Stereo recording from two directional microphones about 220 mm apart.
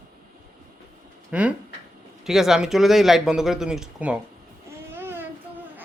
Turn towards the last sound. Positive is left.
turn(degrees=-10)  # may be behind; listen again after turning